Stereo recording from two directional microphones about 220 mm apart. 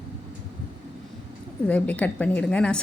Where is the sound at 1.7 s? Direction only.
5° left (ahead or behind).